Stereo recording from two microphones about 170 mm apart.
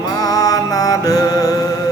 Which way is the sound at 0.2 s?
20° left (ahead or behind).